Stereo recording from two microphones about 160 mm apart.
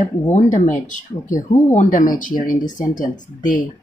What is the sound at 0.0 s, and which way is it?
Speech, 45° left (ahead or behind).